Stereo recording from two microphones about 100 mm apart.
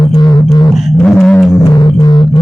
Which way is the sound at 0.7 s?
Centre (ahead or behind).